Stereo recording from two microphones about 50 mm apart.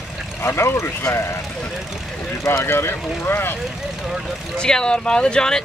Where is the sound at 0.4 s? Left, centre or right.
Left.